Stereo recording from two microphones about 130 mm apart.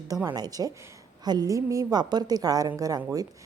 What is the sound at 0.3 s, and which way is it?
A woman's voice, 30° right (ahead or behind).